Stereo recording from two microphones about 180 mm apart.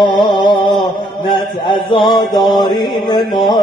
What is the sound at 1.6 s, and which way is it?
Mantra, 25° left (ahead or behind).